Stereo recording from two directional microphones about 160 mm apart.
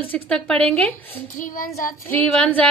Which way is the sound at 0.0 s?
10° left (ahead or behind).